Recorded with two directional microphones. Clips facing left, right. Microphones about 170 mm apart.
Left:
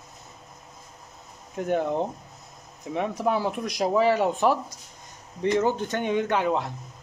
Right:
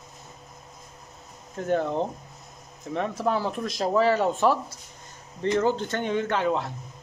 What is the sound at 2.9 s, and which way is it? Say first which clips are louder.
Speech: left 1 dB; 10° left (ahead or behind).